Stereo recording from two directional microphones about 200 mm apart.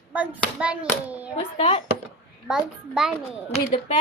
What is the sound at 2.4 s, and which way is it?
Speech, centre (ahead or behind).